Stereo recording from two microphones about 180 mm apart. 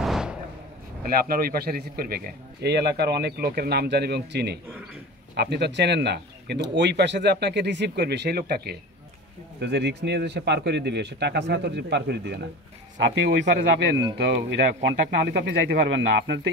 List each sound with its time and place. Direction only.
0.0 s a sound: 5° right (ahead or behind)
1.0 s a man's voice: 55° right (ahead or behind)
9.6 s a man's voice: 70° right (ahead or behind)
12.9 s a man's voice: 85° right